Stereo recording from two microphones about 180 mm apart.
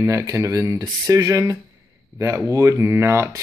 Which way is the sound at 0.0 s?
15° right (ahead or behind).